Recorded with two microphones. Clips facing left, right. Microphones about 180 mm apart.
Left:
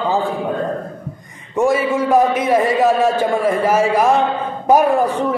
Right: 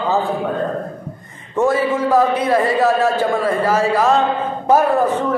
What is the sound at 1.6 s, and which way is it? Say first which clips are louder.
A man's voice: even; 15° left (ahead or behind).